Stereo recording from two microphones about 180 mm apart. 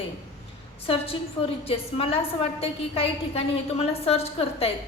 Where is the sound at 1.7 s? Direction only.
30° left (ahead or behind).